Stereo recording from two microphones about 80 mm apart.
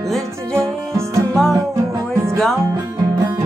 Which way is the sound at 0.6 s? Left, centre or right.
Right.